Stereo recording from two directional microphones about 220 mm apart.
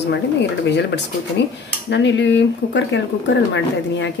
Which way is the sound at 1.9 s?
55° left (ahead or behind).